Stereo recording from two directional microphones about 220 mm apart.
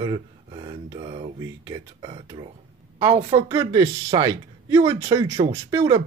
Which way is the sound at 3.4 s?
20° right (ahead or behind).